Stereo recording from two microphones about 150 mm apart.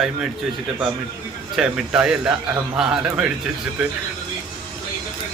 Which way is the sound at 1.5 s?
5° right (ahead or behind).